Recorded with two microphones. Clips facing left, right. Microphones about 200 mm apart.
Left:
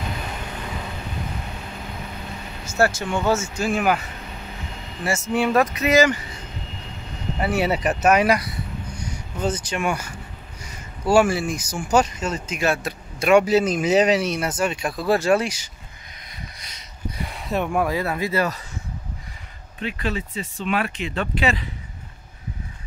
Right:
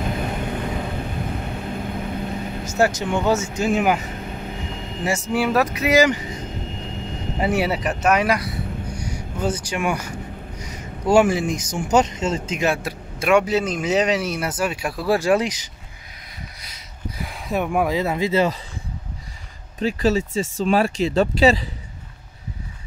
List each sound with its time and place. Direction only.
0.0 s vehicle: 50° right (ahead or behind)
3.0 s speech: 15° right (ahead or behind)
4.1 s vehicle: 50° right (ahead or behind)
5.3 s speech: 5° right (ahead or behind)
7.3 s speech: 20° right (ahead or behind)
7.6 s speech: centre (ahead or behind)
8.9 s speech: 10° right (ahead or behind)
10.6 s a sound: 20° right (ahead or behind)
11.7 s speech: 20° right (ahead or behind)
13.3 s speech: 5° left (ahead or behind); by 15.7 s 15° right (ahead or behind)
16.6 s a sound: 5° right (ahead or behind)
17.7 s speech: 15° right (ahead or behind)
19.8 s speech: 40° right (ahead or behind)